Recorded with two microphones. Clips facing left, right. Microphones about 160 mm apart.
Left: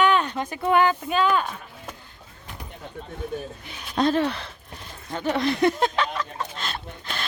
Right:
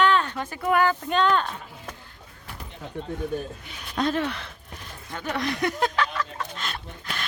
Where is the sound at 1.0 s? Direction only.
5° left (ahead or behind).